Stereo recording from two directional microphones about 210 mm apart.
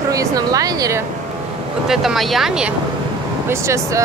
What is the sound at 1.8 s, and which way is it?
Speech, centre (ahead or behind).